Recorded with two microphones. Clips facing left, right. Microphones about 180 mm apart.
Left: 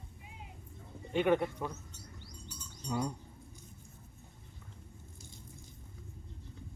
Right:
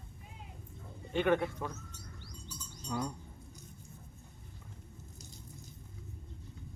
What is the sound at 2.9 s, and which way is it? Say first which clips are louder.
Speech: left 2 dB; 10° left (ahead or behind).